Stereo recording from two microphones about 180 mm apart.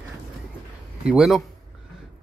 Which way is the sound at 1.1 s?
5° right (ahead or behind).